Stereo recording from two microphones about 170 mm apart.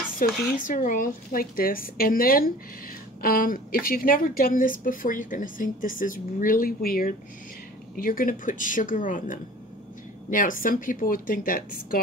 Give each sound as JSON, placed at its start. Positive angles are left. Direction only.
{"t": 0.3, "sound": "speech", "side_deg": 0}
{"t": 0.7, "sound": "a woman's voice", "side_deg": 50}